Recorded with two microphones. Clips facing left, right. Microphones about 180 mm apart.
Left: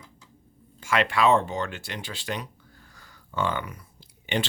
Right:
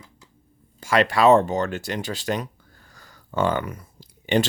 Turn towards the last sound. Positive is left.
turn(degrees=-40)  # may be behind; listen again after turning